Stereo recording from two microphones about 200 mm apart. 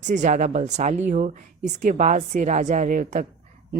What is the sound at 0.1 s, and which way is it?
A woman's voice, 35° right (ahead or behind).